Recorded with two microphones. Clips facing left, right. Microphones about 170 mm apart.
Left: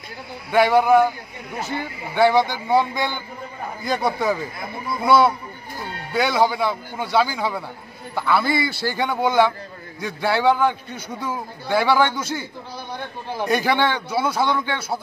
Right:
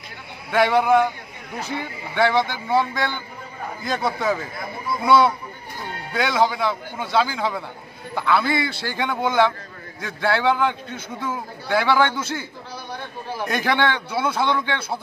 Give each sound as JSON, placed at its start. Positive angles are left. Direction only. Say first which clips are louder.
{"t": 0.5, "sound": "a man's voice", "louder": "left 2 dB", "side_deg": 10}
{"t": 13.5, "sound": "a man's voice", "louder": "left 2 dB", "side_deg": 10}